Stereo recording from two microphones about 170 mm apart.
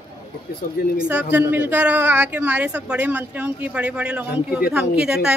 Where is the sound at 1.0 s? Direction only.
10° right (ahead or behind).